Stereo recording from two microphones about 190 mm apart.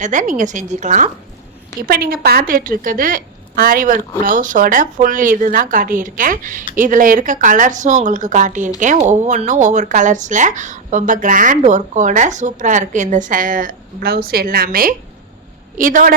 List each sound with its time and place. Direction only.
0.0 s speech: 40° right (ahead or behind)
1.9 s speech: 50° right (ahead or behind)